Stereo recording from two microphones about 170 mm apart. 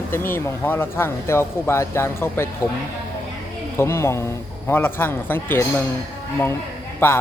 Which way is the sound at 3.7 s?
15° left (ahead or behind).